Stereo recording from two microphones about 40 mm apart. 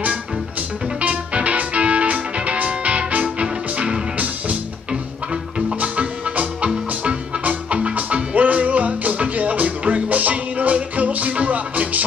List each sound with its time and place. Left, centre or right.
1.0 s music: right
5.8 s music: right